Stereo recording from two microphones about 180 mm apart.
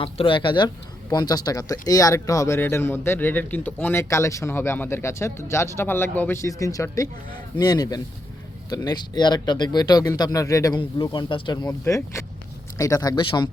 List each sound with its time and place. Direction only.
0.0 s speech: 30° left (ahead or behind)